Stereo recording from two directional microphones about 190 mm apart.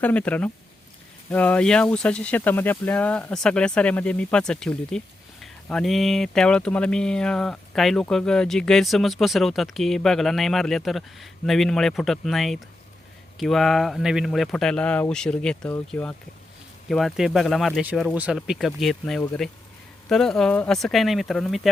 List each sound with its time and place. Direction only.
0.0 s speech: 5° left (ahead or behind)